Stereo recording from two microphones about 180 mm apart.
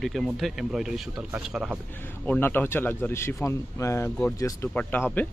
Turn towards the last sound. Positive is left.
turn(degrees=10)  # may be behind; listen again after turning